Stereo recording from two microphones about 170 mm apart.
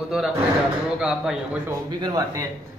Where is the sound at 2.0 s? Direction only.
25° right (ahead or behind).